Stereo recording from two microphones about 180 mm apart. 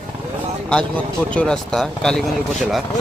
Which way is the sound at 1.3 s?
5° left (ahead or behind).